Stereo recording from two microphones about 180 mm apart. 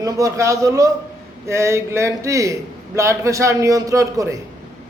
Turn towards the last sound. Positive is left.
turn(degrees=-15)  # may be behind; listen again after turning